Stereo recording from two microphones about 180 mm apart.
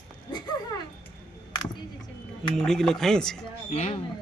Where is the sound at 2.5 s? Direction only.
5° left (ahead or behind).